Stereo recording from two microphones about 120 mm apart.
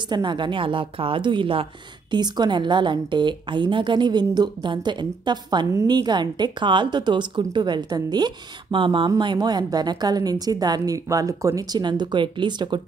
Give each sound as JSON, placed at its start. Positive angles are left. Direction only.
{"t": 0.1, "sound": "a woman's voice", "side_deg": -40}